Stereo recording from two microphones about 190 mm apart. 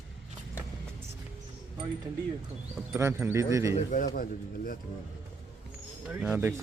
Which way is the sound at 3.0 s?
10° right (ahead or behind).